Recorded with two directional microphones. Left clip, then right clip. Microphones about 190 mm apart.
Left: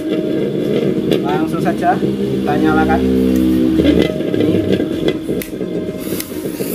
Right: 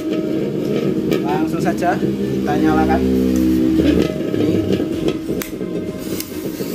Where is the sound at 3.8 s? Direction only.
15° left (ahead or behind).